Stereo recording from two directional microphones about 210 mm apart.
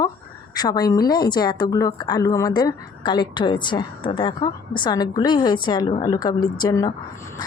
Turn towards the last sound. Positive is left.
turn(degrees=15)  # may be behind; listen again after turning